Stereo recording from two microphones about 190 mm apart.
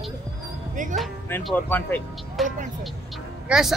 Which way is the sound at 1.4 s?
10° left (ahead or behind).